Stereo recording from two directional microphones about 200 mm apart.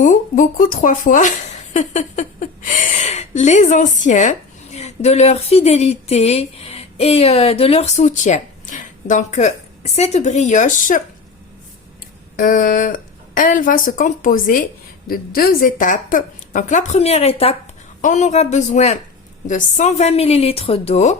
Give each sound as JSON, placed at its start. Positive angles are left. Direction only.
{"t": 0.0, "sound": "speech", "side_deg": 40}
{"t": 12.4, "sound": "a woman's voice", "side_deg": 40}